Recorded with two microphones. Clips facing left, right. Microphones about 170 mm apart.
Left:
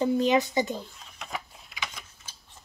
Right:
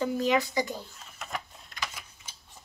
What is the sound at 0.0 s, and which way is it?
Speech, 20° left (ahead or behind).